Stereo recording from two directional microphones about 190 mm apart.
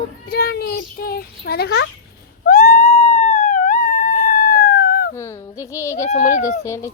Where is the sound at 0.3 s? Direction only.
55° left (ahead or behind).